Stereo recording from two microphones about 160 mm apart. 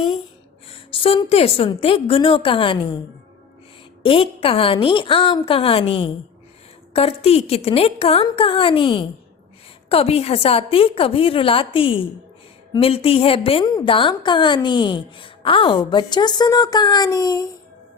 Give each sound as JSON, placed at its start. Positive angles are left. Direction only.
{"t": 0.7, "sound": "a woman's voice", "side_deg": 35}
{"t": 4.0, "sound": "a woman's voice", "side_deg": 35}